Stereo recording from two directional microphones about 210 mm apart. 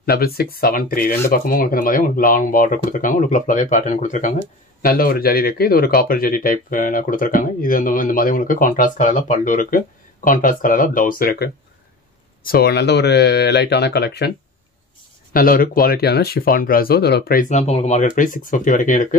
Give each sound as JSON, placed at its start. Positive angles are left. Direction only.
{"t": 0.0, "sound": "speech", "side_deg": 45}
{"t": 15.3, "sound": "speech", "side_deg": 45}